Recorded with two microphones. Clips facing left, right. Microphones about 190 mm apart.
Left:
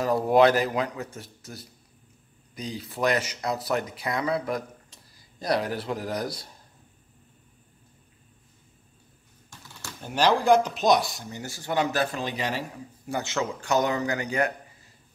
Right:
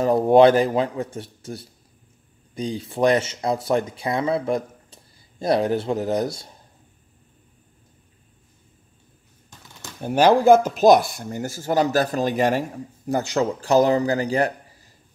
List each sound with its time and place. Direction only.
0.0 s speech: 30° right (ahead or behind)
9.9 s a man's voice: 55° right (ahead or behind); by 14.5 s 35° right (ahead or behind)